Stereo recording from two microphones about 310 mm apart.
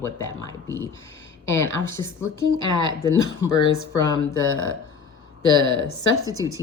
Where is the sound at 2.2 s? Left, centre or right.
Left.